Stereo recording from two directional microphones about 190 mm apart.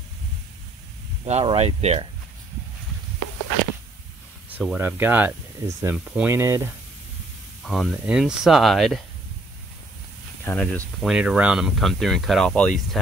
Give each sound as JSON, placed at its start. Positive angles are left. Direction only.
{"t": 1.2, "sound": "speech", "side_deg": -30}
{"t": 4.5, "sound": "speech", "side_deg": -10}
{"t": 7.6, "sound": "speech", "side_deg": 0}
{"t": 10.4, "sound": "speech", "side_deg": 10}
{"t": 11.0, "sound": "speech", "side_deg": -5}